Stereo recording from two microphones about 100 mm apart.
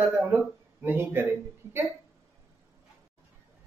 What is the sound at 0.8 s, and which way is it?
Speech, 25° right (ahead or behind).